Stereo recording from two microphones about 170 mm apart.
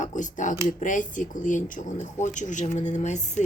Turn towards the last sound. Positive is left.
turn(degrees=45)  # may be behind; listen again after turning